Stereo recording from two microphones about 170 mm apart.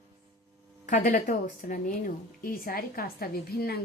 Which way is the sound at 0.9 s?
45° left (ahead or behind).